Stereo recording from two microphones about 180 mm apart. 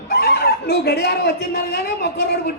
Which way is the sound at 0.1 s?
60° left (ahead or behind).